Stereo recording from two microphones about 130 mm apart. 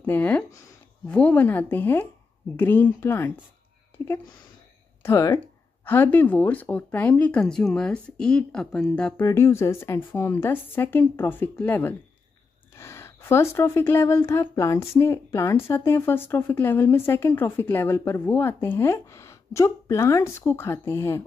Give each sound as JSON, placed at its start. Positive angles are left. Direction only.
{"t": 0.0, "sound": "speech", "side_deg": 15}
{"t": 5.0, "sound": "speech", "side_deg": 25}
{"t": 9.2, "sound": "a woman's voice", "side_deg": 20}